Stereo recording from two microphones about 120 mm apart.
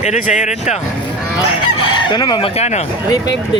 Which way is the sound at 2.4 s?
65° left (ahead or behind).